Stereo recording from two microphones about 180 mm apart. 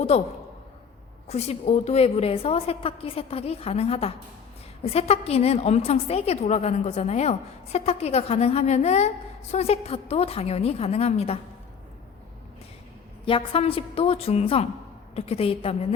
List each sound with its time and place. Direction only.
0.1 s a woman's voice: 35° left (ahead or behind)
1.3 s a woman's voice: 35° left (ahead or behind)
13.2 s a woman's voice: 30° left (ahead or behind)